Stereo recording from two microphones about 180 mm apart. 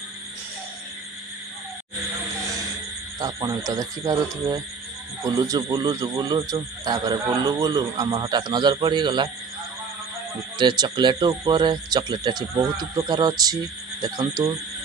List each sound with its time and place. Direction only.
3.2 s speech: 20° right (ahead or behind)
10.6 s speech: 25° right (ahead or behind)